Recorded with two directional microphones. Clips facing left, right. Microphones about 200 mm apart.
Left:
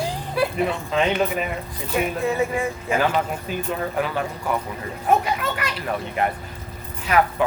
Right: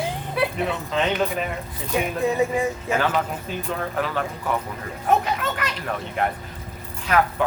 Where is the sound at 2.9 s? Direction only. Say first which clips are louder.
Left 4 dB; 10° left (ahead or behind).